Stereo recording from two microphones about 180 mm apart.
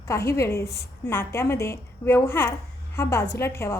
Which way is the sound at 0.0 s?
15° left (ahead or behind).